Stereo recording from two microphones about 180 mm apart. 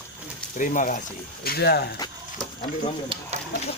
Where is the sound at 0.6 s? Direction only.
45° left (ahead or behind).